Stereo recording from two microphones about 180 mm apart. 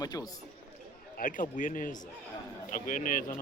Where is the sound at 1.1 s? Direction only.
50° left (ahead or behind).